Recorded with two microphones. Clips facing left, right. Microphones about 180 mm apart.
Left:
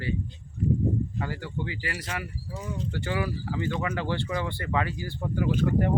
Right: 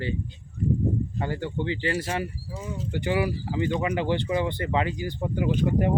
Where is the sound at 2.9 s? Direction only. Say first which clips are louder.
Right 6 dB; 20° right (ahead or behind).